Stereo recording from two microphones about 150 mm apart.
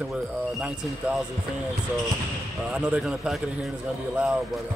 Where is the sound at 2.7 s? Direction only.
5° right (ahead or behind).